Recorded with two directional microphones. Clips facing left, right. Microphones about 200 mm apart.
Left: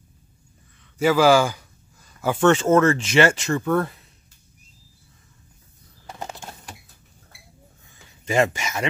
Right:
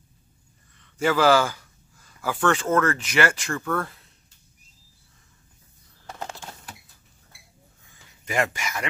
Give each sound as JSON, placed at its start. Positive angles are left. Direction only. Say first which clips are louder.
{"t": 0.9, "sound": "speech", "louder": "left 3 dB", "side_deg": 10}
{"t": 2.2, "sound": "speech", "louder": "left 6 dB", "side_deg": 25}
{"t": 6.0, "sound": "a sound", "louder": "left 1 dB", "side_deg": 10}
{"t": 8.3, "sound": "speech", "louder": "left 5 dB", "side_deg": 25}